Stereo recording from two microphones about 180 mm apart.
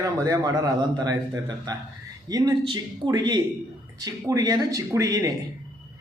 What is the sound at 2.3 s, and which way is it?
Speech, 20° right (ahead or behind).